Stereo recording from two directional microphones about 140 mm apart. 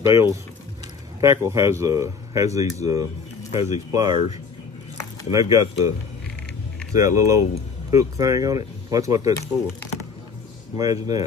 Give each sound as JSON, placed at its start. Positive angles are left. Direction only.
{"t": 0.0, "sound": "speech", "side_deg": -20}
{"t": 3.4, "sound": "speech", "side_deg": 55}
{"t": 3.9, "sound": "speech", "side_deg": -25}
{"t": 10.8, "sound": "speech", "side_deg": -25}